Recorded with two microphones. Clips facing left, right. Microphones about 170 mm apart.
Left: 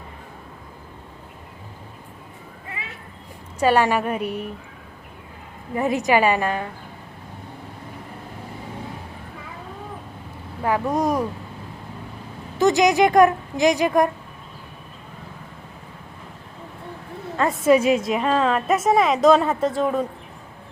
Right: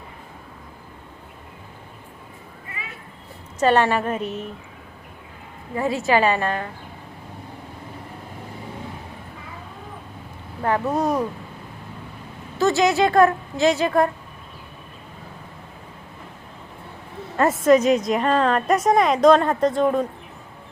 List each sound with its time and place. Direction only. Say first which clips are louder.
3.6 s speech: even; 10° left (ahead or behind)
5.7 s speech: left 1 dB; 20° left (ahead or behind)
10.6 s speech: even; 10° left (ahead or behind)
12.5 s speech: left 2 dB; 15° left (ahead or behind)
17.6 s a woman's voice: even; 5° left (ahead or behind)